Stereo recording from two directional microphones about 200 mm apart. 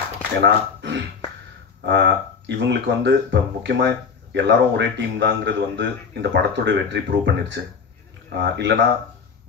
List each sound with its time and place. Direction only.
0.4 s speech: 60° right (ahead or behind)